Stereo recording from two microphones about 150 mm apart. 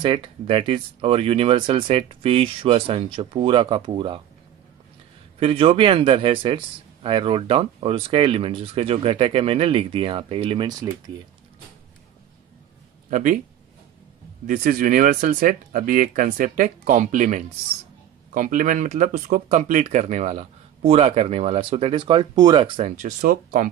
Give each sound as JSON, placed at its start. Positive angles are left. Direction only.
{"t": 0.0, "sound": "a man's voice", "side_deg": -35}
{"t": 5.4, "sound": "a man's voice", "side_deg": -40}
{"t": 13.1, "sound": "speech", "side_deg": -60}
{"t": 14.4, "sound": "a man's voice", "side_deg": -65}
{"t": 22.8, "sound": "speech", "side_deg": -55}